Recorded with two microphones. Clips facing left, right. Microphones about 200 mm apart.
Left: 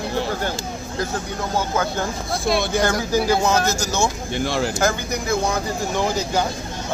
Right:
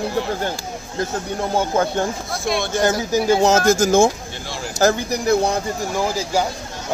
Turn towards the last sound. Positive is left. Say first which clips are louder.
# right 1 dB
turn(degrees=-5)  # may be behind; listen again after turning